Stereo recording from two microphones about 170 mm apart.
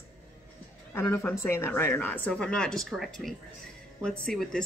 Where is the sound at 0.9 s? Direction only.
15° left (ahead or behind).